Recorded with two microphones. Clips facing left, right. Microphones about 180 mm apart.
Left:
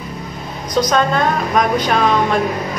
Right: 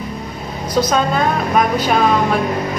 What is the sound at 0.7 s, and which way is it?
Speech, 5° right (ahead or behind).